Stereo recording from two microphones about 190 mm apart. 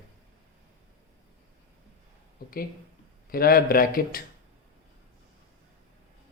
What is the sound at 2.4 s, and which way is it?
Speech, 50° left (ahead or behind).